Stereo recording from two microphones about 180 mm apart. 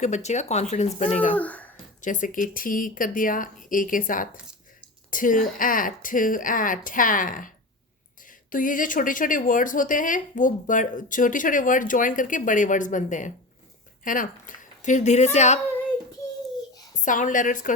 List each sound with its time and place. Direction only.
0.0 s speech: 40° left (ahead or behind)
1.4 s a child's voice: 10° left (ahead or behind)
2.0 s speech: 45° left (ahead or behind)
16.9 s a woman's voice: 45° left (ahead or behind)